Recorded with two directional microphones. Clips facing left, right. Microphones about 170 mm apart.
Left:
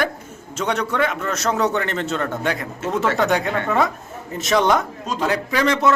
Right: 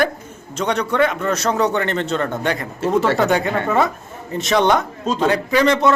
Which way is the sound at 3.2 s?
Centre (ahead or behind).